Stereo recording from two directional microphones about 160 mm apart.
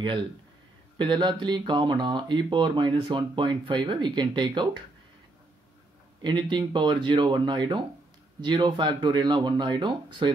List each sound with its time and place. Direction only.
0.9 s speech: 30° right (ahead or behind)
6.2 s speech: 30° right (ahead or behind)